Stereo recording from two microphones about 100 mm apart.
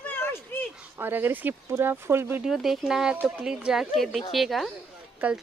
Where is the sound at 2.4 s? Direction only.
5° right (ahead or behind).